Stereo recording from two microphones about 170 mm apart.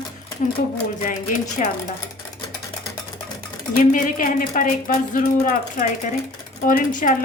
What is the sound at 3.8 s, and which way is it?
A woman's voice, 50° left (ahead or behind).